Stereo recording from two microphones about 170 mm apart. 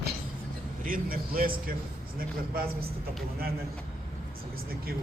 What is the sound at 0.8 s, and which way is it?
A man's voice, 55° right (ahead or behind).